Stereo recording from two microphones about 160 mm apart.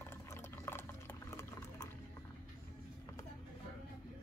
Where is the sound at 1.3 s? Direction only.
15° left (ahead or behind).